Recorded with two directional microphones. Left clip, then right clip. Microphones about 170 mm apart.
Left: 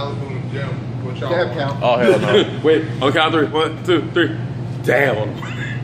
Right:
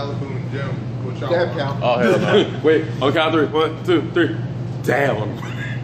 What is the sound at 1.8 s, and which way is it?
Speech, 25° left (ahead or behind).